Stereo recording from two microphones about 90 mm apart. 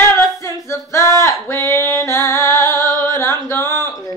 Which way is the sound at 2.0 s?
35° left (ahead or behind).